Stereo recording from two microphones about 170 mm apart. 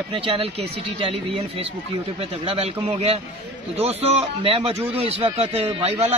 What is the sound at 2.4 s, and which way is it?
A man's voice, 35° right (ahead or behind).